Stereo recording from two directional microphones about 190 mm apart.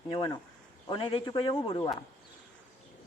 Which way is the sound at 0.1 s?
25° left (ahead or behind).